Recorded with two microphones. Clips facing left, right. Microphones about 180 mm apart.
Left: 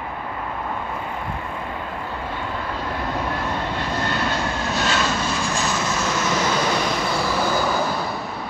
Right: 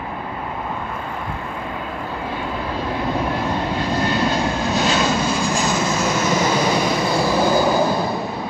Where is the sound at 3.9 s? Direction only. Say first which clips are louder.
Right 5 dB; 15° right (ahead or behind).